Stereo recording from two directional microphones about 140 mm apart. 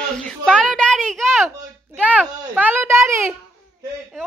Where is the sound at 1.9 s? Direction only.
10° right (ahead or behind).